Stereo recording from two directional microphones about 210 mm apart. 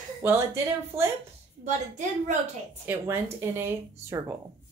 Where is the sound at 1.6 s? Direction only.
35° right (ahead or behind).